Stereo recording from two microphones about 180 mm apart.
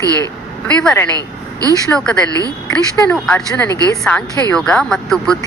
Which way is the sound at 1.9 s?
5° left (ahead or behind).